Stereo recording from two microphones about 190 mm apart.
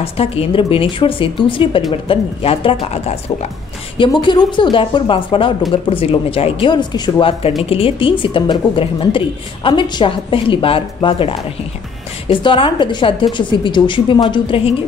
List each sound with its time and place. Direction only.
0.0 s a woman's voice: 30° left (ahead or behind)